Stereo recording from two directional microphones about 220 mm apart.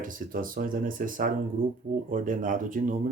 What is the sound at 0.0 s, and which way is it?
Speech, 40° right (ahead or behind).